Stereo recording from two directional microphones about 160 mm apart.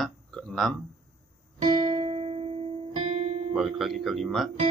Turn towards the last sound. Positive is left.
turn(degrees=0)  # may be behind; listen again after turning